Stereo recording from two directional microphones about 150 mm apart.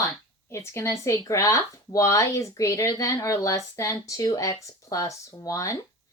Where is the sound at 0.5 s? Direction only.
20° left (ahead or behind).